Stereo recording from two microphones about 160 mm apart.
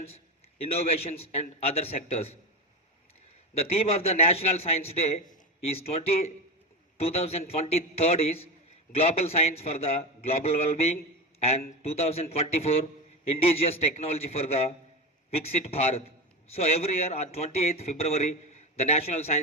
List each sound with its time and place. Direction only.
0.6 s a man's voice: 40° left (ahead or behind)
3.6 s a man's voice: 40° left (ahead or behind)